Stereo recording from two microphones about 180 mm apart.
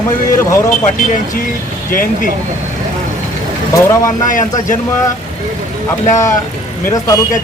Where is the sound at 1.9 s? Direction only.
50° left (ahead or behind).